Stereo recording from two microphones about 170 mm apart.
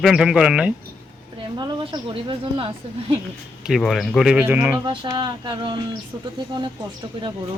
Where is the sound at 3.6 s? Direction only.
Centre (ahead or behind).